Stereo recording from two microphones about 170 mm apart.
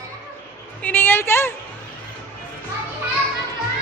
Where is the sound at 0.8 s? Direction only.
10° left (ahead or behind).